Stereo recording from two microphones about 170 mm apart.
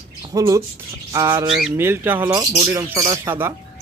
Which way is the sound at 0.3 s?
20° right (ahead or behind).